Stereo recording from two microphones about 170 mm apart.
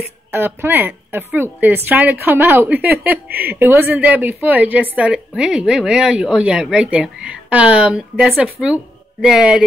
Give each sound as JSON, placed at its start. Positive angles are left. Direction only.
{"t": 0.3, "sound": "a woman's voice", "side_deg": -15}
{"t": 3.3, "sound": "speech", "side_deg": -65}
{"t": 3.5, "sound": "a woman's voice", "side_deg": -10}